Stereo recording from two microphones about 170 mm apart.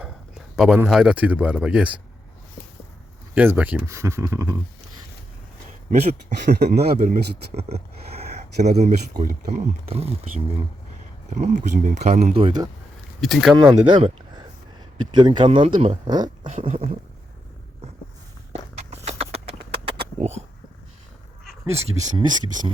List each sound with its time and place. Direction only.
0.0 s speech: 5° right (ahead or behind)
3.3 s speech: 10° right (ahead or behind)
5.9 s speech: 45° right (ahead or behind)
6.5 s speech: 75° right (ahead or behind)
7.0 s speech: 40° right (ahead or behind)
9.8 s speech: 35° right (ahead or behind)
12.3 s speech: 30° right (ahead or behind)
13.2 s speech: centre (ahead or behind)
13.6 s speech: 25° right (ahead or behind)
16.0 s speech: 25° right (ahead or behind)
16.5 s speech: 45° right (ahead or behind)
18.9 s clip-clop: 40° right (ahead or behind)
21.6 s speech: 15° right (ahead or behind)
22.1 s speech: 25° right (ahead or behind)